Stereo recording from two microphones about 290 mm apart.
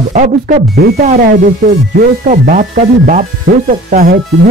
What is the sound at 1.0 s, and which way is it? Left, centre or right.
Speech, right.